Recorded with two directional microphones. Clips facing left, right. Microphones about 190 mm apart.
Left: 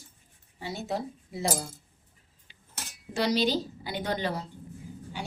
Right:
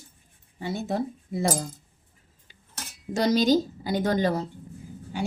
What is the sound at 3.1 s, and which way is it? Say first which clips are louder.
A woman's voice: right 5 dB; 45° right (ahead or behind).